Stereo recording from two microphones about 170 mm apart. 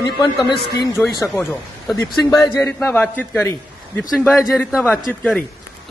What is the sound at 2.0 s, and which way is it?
Speech, 20° left (ahead or behind).